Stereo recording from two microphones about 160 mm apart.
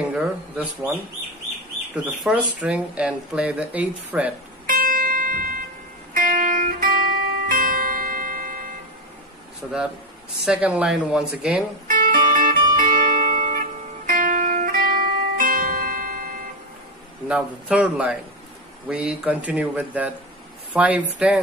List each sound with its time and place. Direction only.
0.1 s mouse: 10° right (ahead or behind)
2.0 s speech: 5° right (ahead or behind)
4.6 s music: 60° right (ahead or behind)
9.6 s speech: centre (ahead or behind)
11.9 s music: 60° right (ahead or behind)
17.3 s speech: 5° right (ahead or behind)